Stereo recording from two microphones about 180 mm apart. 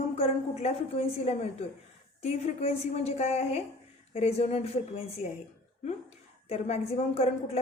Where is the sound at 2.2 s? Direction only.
35° left (ahead or behind).